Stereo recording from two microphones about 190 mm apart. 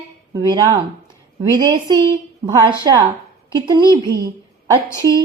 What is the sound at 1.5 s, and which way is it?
A woman's voice, 20° right (ahead or behind).